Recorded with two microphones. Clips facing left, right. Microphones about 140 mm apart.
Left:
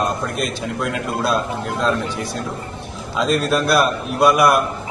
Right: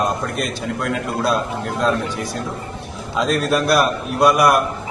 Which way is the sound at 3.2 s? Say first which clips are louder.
Even; centre (ahead or behind).